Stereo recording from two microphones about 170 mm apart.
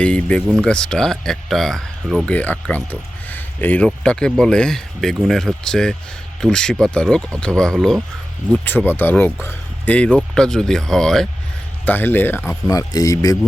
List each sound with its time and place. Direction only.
0.0 s speech: 5° left (ahead or behind)
8.9 s speech: 10° left (ahead or behind)